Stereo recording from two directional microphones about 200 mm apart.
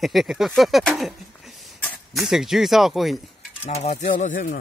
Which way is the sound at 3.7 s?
35° left (ahead or behind).